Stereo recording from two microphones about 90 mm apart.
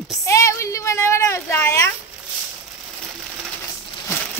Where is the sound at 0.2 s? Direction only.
35° left (ahead or behind).